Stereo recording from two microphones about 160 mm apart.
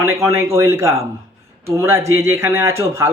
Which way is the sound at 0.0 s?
20° right (ahead or behind).